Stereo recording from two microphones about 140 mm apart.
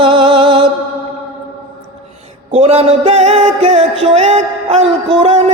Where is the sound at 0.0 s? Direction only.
40° right (ahead or behind).